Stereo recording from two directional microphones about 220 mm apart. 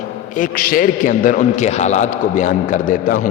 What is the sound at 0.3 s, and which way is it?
A man's voice, 40° left (ahead or behind).